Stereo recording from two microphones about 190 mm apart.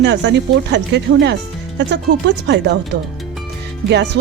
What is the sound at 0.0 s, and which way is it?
Speech, 70° right (ahead or behind).